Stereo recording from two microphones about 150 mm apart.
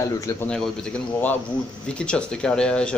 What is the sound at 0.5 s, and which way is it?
Speech, 5° left (ahead or behind).